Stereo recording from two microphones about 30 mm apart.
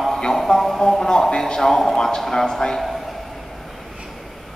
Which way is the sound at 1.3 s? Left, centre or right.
Left.